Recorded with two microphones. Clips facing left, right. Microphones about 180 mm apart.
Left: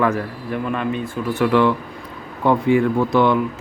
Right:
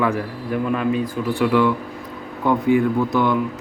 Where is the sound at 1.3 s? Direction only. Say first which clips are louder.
Left 1 dB; 15° right (ahead or behind).